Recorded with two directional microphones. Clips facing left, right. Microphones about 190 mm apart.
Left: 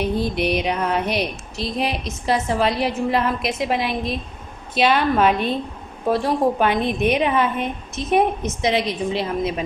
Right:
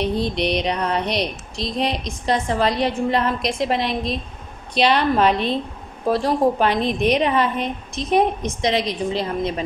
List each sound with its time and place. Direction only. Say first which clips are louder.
0.0 s speech: even; 5° left (ahead or behind)